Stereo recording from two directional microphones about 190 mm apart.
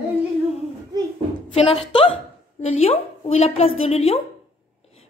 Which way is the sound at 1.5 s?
30° left (ahead or behind).